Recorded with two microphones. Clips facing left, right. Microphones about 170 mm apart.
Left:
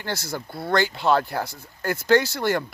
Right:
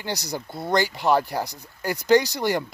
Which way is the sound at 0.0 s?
15° right (ahead or behind).